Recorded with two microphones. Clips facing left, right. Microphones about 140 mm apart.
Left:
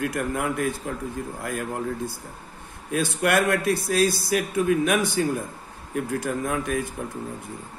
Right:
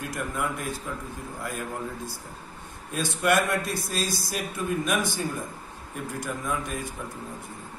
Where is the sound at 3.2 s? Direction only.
65° left (ahead or behind).